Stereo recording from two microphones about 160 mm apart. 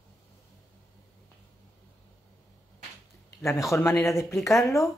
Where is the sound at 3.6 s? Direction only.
20° left (ahead or behind).